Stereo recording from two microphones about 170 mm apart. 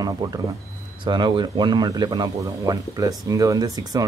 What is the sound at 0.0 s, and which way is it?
Speech, 20° right (ahead or behind).